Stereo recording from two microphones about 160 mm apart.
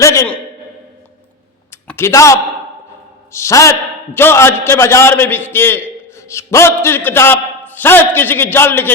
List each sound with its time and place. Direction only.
0.0 s a man's voice: 20° left (ahead or behind)
1.7 s a sound: 15° left (ahead or behind)
3.3 s a man's voice: 20° left (ahead or behind)